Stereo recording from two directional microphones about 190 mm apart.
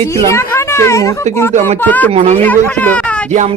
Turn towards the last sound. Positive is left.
turn(degrees=-40)  # may be behind; listen again after turning